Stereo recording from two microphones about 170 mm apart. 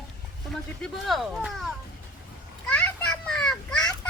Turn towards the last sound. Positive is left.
turn(degrees=5)  # may be behind; listen again after turning